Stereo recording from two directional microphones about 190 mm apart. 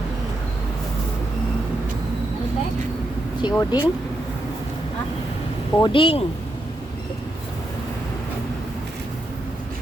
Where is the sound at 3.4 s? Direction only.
20° left (ahead or behind).